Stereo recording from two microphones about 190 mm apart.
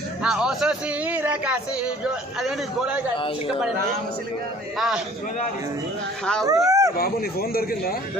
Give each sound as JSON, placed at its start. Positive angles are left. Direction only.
{"t": 0.2, "sound": "speech", "side_deg": -5}
{"t": 6.4, "sound": "speech", "side_deg": -20}
{"t": 6.9, "sound": "speech", "side_deg": 50}